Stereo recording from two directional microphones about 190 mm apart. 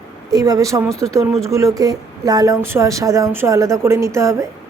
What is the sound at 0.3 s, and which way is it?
Speech, 20° right (ahead or behind).